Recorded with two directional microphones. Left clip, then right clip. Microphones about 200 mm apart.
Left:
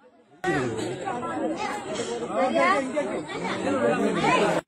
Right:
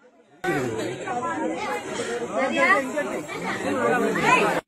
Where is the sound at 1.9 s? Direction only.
15° right (ahead or behind).